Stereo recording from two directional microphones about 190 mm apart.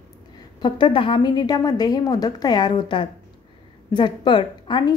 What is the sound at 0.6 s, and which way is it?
Speech, 25° left (ahead or behind).